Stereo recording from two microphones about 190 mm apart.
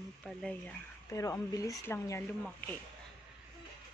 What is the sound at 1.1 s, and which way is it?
Speech, 15° left (ahead or behind).